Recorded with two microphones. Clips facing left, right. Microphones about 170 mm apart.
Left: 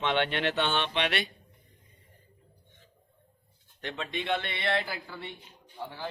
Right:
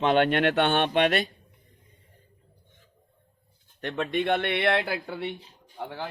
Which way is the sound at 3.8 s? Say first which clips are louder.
Right 8 dB; 55° right (ahead or behind).